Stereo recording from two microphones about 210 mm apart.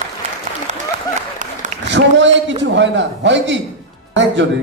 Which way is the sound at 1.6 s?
35° right (ahead or behind).